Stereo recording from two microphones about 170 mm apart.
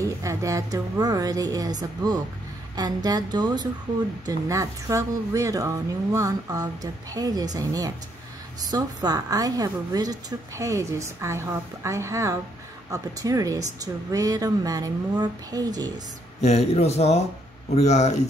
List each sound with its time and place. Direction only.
0.0 s a woman's voice: 20° right (ahead or behind)
16.3 s speech: 40° left (ahead or behind)